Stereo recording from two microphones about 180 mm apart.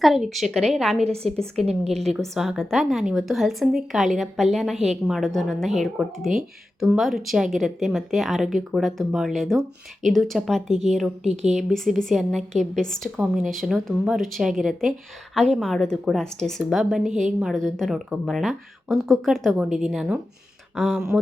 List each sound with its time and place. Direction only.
0.0 s speech: centre (ahead or behind)
1.0 s speech: 35° right (ahead or behind)
1.6 s speech: centre (ahead or behind)
11.2 s speech: 40° right (ahead or behind)
11.7 s speech: centre (ahead or behind)